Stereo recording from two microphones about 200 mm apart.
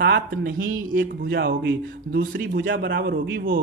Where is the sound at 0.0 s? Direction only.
55° right (ahead or behind).